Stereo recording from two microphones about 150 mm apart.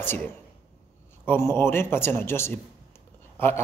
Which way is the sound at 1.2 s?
15° left (ahead or behind).